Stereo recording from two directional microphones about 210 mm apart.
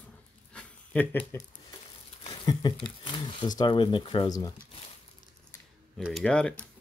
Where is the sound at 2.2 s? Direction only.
20° left (ahead or behind).